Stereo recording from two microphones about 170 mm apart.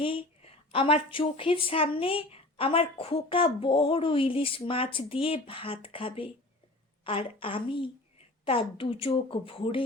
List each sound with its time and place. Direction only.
0.0 s a woman's voice: 30° left (ahead or behind)